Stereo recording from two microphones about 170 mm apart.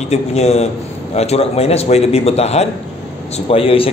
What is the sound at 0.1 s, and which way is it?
A man's voice, 40° left (ahead or behind).